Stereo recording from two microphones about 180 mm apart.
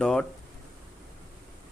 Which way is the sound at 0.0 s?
5° left (ahead or behind).